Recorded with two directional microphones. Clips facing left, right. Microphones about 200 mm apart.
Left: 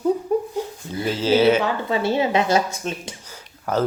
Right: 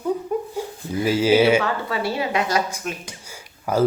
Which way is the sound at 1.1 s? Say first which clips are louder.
Right 1 dB; 10° right (ahead or behind).